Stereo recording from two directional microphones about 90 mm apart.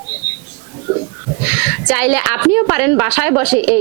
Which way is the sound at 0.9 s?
20° right (ahead or behind).